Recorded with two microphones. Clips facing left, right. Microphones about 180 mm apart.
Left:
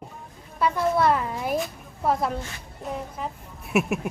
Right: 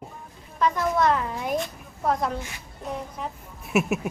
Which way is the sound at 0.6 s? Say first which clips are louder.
Left 1 dB; 10° left (ahead or behind).